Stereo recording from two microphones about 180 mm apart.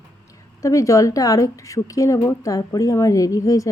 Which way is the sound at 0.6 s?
15° left (ahead or behind).